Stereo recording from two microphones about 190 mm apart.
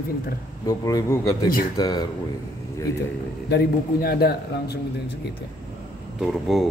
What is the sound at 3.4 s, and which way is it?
A man's voice, 55° left (ahead or behind).